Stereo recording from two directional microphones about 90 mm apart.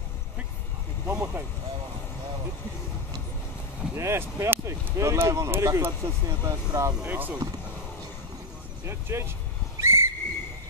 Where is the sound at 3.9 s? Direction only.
30° right (ahead or behind).